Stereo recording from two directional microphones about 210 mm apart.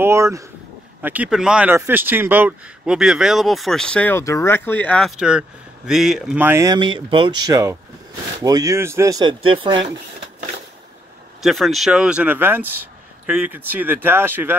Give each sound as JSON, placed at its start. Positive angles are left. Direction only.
{"t": 0.0, "sound": "speech", "side_deg": -15}
{"t": 11.4, "sound": "speech", "side_deg": 0}